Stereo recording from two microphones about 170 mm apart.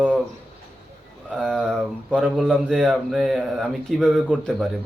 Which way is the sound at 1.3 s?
5° left (ahead or behind).